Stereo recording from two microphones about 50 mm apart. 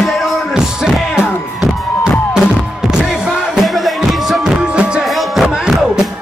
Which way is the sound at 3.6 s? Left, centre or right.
Centre.